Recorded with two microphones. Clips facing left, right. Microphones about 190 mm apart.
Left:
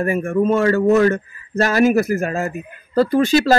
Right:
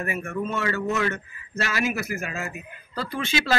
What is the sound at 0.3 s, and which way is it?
Speech, 45° left (ahead or behind).